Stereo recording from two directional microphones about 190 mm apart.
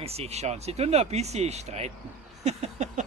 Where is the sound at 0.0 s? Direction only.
35° right (ahead or behind).